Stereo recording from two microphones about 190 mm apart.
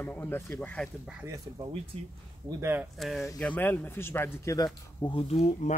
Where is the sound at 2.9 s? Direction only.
Centre (ahead or behind).